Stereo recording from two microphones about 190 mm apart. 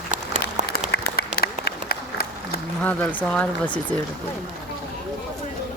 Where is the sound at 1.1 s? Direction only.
55° left (ahead or behind).